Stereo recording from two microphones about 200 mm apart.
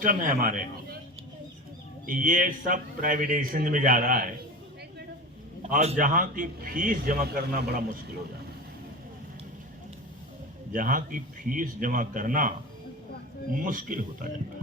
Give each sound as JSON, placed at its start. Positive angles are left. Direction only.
{"t": 0.0, "sound": "a man's voice", "side_deg": -40}
{"t": 2.0, "sound": "a man's voice", "side_deg": -40}
{"t": 5.7, "sound": "a man's voice", "side_deg": -35}
{"t": 10.7, "sound": "a man's voice", "side_deg": -45}